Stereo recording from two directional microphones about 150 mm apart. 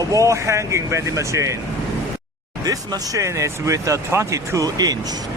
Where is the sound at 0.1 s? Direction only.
20° right (ahead or behind).